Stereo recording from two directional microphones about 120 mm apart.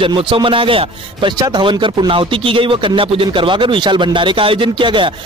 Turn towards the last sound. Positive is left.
turn(degrees=-45)  # may be behind; listen again after turning